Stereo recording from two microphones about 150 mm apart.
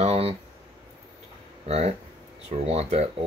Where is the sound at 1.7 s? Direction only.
45° right (ahead or behind).